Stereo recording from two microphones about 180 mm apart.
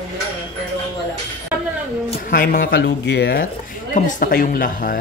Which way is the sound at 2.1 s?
50° left (ahead or behind).